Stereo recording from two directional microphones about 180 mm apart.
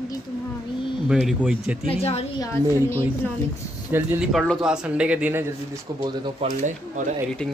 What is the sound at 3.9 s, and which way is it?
Speech, 10° right (ahead or behind).